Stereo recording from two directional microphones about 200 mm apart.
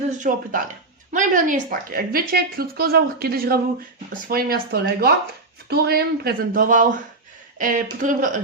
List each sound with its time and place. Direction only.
0.1 s a woman's voice: 40° right (ahead or behind)